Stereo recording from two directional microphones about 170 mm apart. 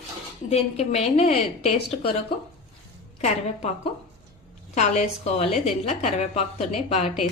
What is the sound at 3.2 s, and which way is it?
Speech, 40° left (ahead or behind).